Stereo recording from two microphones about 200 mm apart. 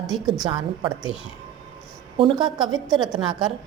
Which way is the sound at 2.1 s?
25° right (ahead or behind).